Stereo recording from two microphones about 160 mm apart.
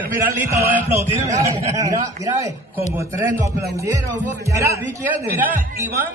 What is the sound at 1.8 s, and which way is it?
Speech, 20° right (ahead or behind).